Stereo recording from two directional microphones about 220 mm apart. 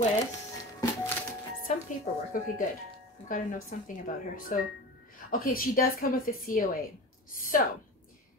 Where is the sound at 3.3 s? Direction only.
35° left (ahead or behind).